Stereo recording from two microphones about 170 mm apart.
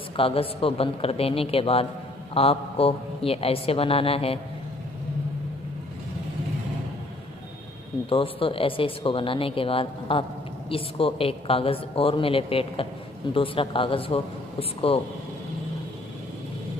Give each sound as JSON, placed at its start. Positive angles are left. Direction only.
{"t": 0.1, "sound": "a man's voice", "side_deg": 35}
{"t": 8.1, "sound": "a man's voice", "side_deg": 30}